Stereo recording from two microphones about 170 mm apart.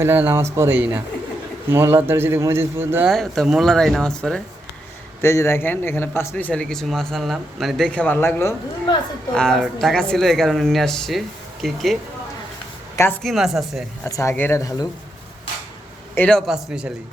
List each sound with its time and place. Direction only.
0.0 s speech: 10° right (ahead or behind)
3.1 s speech: centre (ahead or behind)
5.2 s a man's voice: 15° left (ahead or behind)
9.3 s speech: 5° left (ahead or behind)
13.2 s speech: centre (ahead or behind)
14.0 s a man's voice: 15° left (ahead or behind)
16.1 s a man's voice: 10° left (ahead or behind)
16.5 s speech: 5° right (ahead or behind)